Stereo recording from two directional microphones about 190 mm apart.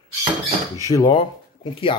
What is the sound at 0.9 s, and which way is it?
Speech, 20° left (ahead or behind).